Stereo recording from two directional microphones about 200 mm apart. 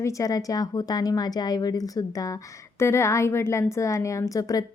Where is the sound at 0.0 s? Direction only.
15° left (ahead or behind).